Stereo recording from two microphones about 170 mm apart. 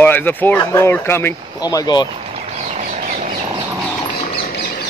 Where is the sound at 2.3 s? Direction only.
40° right (ahead or behind).